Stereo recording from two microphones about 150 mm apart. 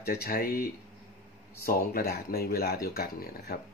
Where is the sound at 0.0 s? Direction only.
90° left.